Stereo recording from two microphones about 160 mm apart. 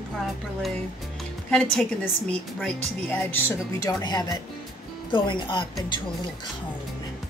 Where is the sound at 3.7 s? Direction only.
25° left (ahead or behind).